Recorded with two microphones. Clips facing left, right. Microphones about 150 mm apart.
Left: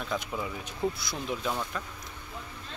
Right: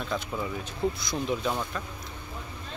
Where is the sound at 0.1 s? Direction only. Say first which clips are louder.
Right 1 dB; 15° left (ahead or behind).